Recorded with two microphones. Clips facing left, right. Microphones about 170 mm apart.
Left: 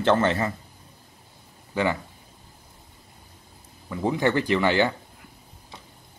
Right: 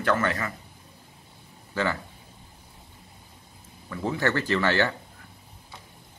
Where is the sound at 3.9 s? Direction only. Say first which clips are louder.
Left 3 dB; 15° left (ahead or behind).